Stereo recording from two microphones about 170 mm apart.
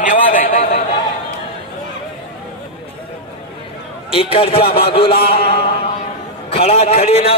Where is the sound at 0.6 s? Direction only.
40° left (ahead or behind).